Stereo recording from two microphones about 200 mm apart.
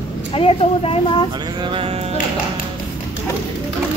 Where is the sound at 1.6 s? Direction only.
25° right (ahead or behind).